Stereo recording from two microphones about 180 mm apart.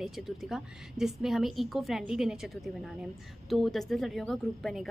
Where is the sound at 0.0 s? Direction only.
Centre (ahead or behind).